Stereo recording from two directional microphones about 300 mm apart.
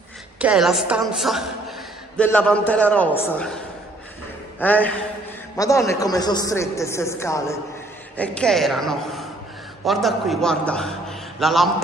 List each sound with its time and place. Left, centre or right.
0.4 s a man's voice: centre
4.6 s a man's voice: centre